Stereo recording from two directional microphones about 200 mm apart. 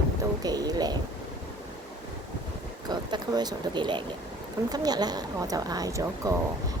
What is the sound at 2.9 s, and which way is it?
Speech, 20° right (ahead or behind).